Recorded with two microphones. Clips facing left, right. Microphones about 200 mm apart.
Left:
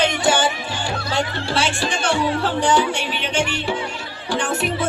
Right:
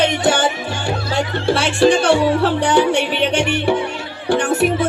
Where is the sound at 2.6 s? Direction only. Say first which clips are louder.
Right 4 dB; 60° right (ahead or behind).